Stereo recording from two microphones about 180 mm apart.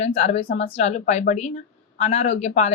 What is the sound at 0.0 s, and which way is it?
A woman's voice, 35° left (ahead or behind).